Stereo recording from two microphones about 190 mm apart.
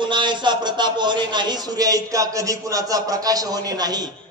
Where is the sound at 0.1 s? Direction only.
25° right (ahead or behind).